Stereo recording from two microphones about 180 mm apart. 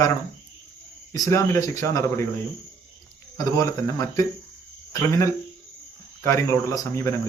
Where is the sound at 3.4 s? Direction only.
20° left (ahead or behind).